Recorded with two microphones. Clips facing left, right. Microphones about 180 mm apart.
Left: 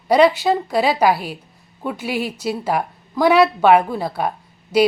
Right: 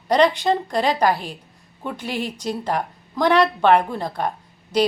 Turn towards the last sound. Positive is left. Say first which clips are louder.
# left 4 dB
turn(degrees=10)  # may be behind; listen again after turning